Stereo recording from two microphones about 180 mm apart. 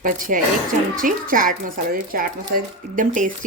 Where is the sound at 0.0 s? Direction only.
50° right (ahead or behind).